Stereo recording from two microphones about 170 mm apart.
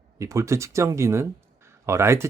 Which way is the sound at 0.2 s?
15° right (ahead or behind).